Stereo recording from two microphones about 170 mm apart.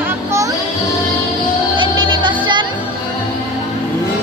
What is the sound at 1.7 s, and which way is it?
Music, 30° right (ahead or behind).